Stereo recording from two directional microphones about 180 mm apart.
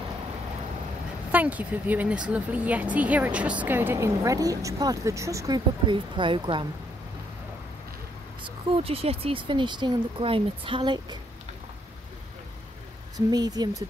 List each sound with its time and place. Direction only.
1.3 s speech: 10° right (ahead or behind); by 6.7 s 25° right (ahead or behind)
8.6 s speech: 30° right (ahead or behind)
13.3 s speech: 20° right (ahead or behind)